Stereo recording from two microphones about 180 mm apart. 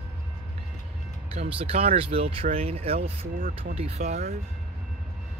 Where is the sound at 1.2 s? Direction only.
35° right (ahead or behind).